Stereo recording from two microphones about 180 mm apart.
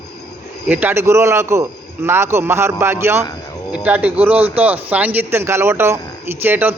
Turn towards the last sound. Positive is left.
turn(degrees=-10)  # may be behind; listen again after turning